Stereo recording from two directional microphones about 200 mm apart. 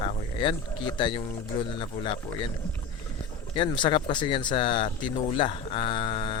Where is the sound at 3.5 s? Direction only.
25° left (ahead or behind).